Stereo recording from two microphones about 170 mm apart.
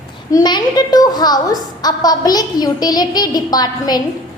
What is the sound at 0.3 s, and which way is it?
A woman's voice, 25° left (ahead or behind).